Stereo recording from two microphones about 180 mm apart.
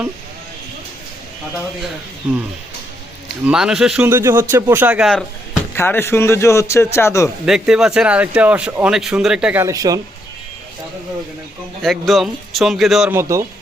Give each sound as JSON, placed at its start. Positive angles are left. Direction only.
{"t": 3.4, "sound": "speech", "side_deg": -5}
{"t": 5.7, "sound": "a man's voice", "side_deg": 10}
{"t": 7.4, "sound": "speech", "side_deg": 0}
{"t": 11.8, "sound": "speech", "side_deg": 0}
{"t": 13.1, "sound": "speech", "side_deg": -15}